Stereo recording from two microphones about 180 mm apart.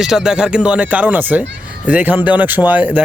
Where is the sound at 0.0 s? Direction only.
5° right (ahead or behind).